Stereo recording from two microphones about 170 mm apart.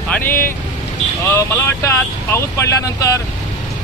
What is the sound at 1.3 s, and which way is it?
Speech, 15° left (ahead or behind).